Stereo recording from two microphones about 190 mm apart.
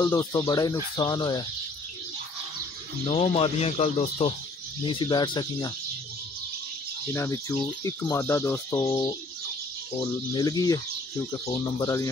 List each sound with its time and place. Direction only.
0.0 s speech: 20° left (ahead or behind)
3.1 s speech: 30° left (ahead or behind)
7.1 s speech: 15° left (ahead or behind)